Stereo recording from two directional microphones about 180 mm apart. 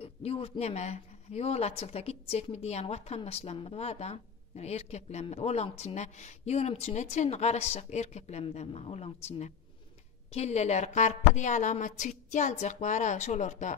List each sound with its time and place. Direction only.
0.0 s speech: 35° left (ahead or behind)